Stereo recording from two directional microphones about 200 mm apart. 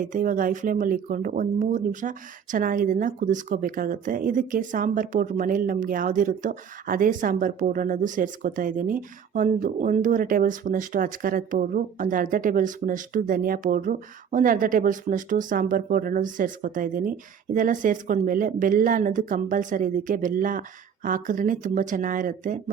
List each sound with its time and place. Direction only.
0.0 s speech: 40° right (ahead or behind)